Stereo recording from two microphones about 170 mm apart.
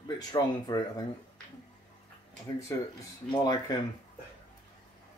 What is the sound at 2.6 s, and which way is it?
Speech, 20° left (ahead or behind).